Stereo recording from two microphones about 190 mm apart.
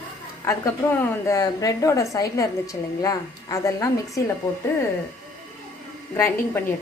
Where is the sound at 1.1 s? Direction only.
15° left (ahead or behind).